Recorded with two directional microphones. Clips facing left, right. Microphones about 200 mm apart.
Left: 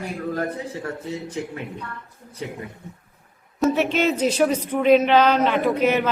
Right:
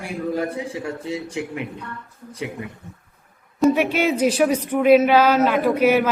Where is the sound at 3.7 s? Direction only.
10° right (ahead or behind).